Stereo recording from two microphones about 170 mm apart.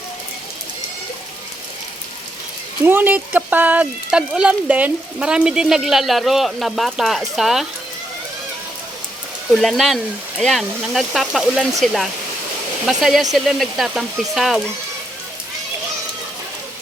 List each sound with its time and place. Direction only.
2.8 s speech: 10° right (ahead or behind)
9.5 s speech: centre (ahead or behind)
12.8 s speech: centre (ahead or behind)